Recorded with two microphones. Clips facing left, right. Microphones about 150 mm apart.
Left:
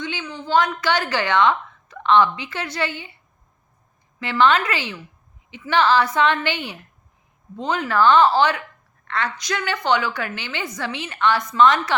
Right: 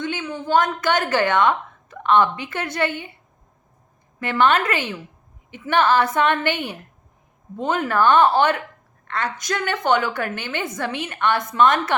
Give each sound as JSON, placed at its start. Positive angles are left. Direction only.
{"t": 0.0, "sound": "a sound", "side_deg": -50}
{"t": 0.3, "sound": "a woman's voice", "side_deg": -50}
{"t": 4.2, "sound": "a woman's voice", "side_deg": -50}